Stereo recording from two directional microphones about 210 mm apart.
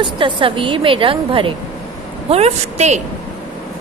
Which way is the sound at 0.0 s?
25° right (ahead or behind).